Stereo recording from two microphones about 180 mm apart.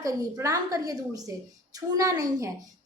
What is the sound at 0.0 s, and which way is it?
A woman's voice, 15° right (ahead or behind).